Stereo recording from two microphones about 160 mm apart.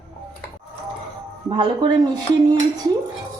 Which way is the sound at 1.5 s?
30° right (ahead or behind).